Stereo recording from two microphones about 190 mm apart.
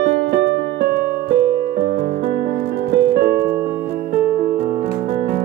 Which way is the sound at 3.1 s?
50° right (ahead or behind).